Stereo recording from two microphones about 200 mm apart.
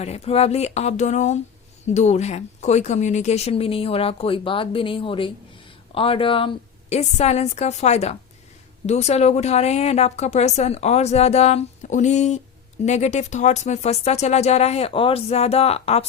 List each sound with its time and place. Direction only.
0.0 s a woman's voice: 30° left (ahead or behind)